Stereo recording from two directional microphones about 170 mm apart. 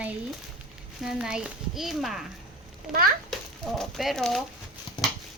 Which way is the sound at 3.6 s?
Centre (ahead or behind).